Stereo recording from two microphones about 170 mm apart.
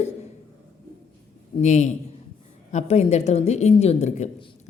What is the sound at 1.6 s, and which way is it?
A man's voice, 45° left (ahead or behind).